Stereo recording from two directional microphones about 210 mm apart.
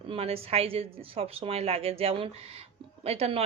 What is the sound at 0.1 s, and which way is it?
A woman's voice, 30° right (ahead or behind).